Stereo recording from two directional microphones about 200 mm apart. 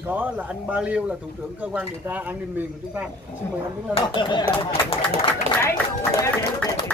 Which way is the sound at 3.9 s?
25° left (ahead or behind).